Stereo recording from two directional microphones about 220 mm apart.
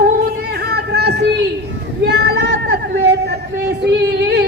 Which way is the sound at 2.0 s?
50° right (ahead or behind).